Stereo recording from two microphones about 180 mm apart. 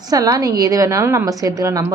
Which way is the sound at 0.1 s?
20° right (ahead or behind).